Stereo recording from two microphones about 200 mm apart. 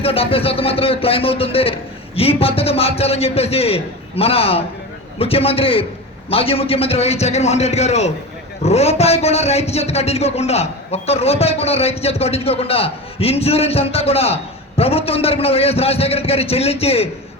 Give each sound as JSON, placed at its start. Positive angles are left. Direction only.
{"t": 0.0, "sound": "a man's voice", "side_deg": 30}